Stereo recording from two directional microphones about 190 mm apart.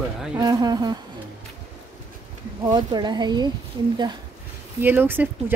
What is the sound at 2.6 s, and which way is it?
Speech, 20° right (ahead or behind).